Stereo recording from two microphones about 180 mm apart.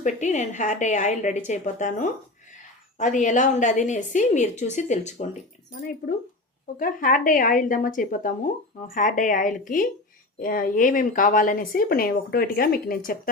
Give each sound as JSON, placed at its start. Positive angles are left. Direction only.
{"t": 0.0, "sound": "a woman's voice", "side_deg": 40}
{"t": 6.7, "sound": "speech", "side_deg": 50}